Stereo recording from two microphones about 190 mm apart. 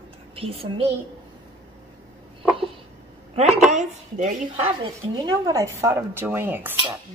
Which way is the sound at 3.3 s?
35° right (ahead or behind).